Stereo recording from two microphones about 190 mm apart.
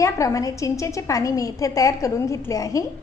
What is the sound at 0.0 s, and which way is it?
A woman's voice, 15° left (ahead or behind).